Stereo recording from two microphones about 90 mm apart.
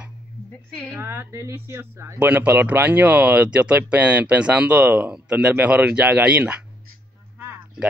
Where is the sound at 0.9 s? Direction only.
25° right (ahead or behind).